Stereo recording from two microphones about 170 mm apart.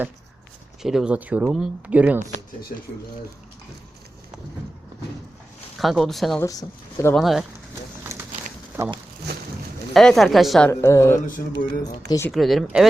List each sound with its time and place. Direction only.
0.8 s speech: centre (ahead or behind)
5.8 s a woman's voice: centre (ahead or behind)
6.4 s speech: 20° left (ahead or behind)
7.2 s a woman's voice: centre (ahead or behind)
8.0 s a sound: 15° right (ahead or behind)
8.8 s speech: 15° right (ahead or behind)
9.9 s a woman's voice: centre (ahead or behind)
10.7 s a woman's voice: 15° left (ahead or behind)
12.3 s a woman's voice: centre (ahead or behind)